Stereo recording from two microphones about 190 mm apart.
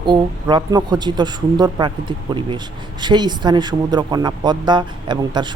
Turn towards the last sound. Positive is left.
turn(degrees=-25)  # may be behind; listen again after turning